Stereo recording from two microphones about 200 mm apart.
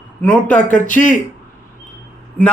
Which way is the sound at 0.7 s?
40° left (ahead or behind).